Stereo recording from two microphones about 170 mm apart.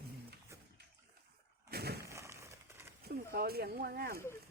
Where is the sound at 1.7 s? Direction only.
70° right (ahead or behind).